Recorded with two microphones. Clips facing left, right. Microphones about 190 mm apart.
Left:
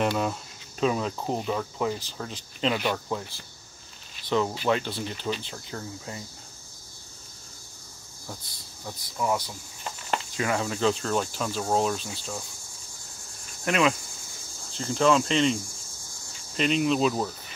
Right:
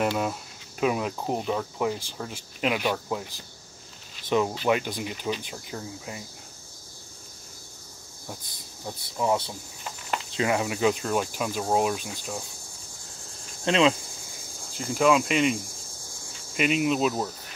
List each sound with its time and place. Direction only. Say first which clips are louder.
0.0 s speech: even; 5° right (ahead or behind)
8.3 s speech: right 1 dB; 20° right (ahead or behind)
13.7 s speech: right 2 dB; 25° right (ahead or behind)
14.7 s speech: even; 10° right (ahead or behind)